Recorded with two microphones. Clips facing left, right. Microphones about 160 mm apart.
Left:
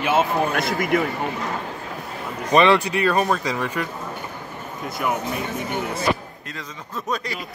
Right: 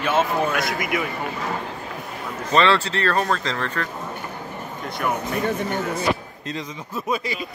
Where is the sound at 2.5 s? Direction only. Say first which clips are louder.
Left 3 dB; 15° left (ahead or behind).